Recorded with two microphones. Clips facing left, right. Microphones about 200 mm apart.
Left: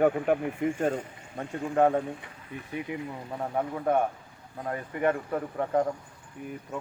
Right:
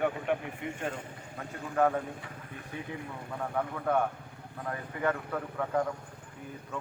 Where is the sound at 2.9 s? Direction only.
10° left (ahead or behind).